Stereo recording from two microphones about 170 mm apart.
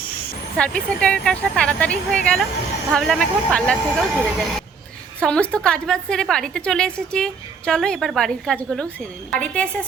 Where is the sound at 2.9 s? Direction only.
Centre (ahead or behind).